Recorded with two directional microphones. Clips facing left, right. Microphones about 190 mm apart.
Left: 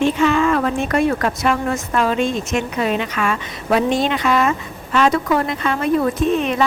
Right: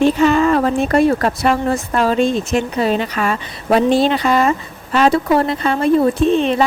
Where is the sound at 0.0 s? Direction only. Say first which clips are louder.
Right 3 dB; 40° right (ahead or behind).